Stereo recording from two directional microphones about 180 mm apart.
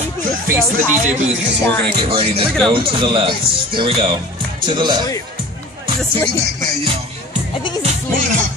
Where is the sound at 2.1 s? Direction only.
30° right (ahead or behind).